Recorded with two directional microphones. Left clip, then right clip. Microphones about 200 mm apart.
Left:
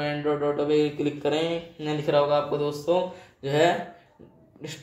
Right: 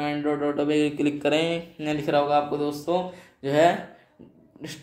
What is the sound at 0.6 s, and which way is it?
A man's voice, 30° right (ahead or behind).